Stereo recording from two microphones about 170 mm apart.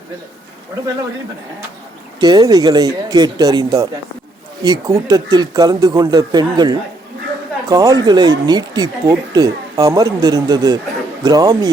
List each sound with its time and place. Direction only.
2.2 s speech: 25° right (ahead or behind)